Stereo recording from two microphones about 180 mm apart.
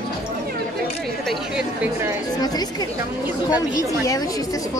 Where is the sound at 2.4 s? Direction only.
20° left (ahead or behind).